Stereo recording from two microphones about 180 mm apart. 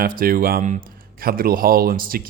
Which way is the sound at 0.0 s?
55° right (ahead or behind).